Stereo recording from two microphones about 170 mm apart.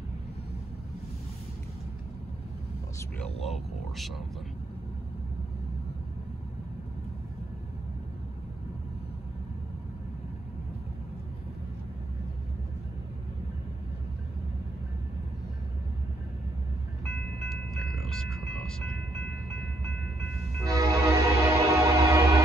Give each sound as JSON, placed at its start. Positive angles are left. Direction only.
{"t": 17.0, "sound": "music", "side_deg": 5}
{"t": 18.5, "sound": "train", "side_deg": 5}
{"t": 20.6, "sound": "music", "side_deg": -20}